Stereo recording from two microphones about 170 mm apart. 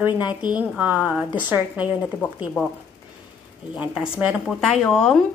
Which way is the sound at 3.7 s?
5° right (ahead or behind).